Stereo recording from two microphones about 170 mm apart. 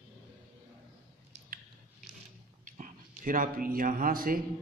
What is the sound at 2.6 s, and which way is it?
Speech, 50° right (ahead or behind).